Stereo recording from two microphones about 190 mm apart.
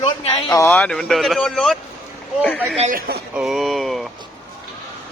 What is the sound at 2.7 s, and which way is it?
Speech, 35° right (ahead or behind).